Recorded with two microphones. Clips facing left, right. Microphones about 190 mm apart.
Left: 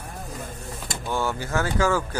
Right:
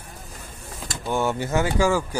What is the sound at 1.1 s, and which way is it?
Speech, 20° right (ahead or behind).